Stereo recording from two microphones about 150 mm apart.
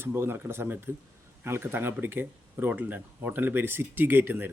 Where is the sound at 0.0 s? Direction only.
15° right (ahead or behind).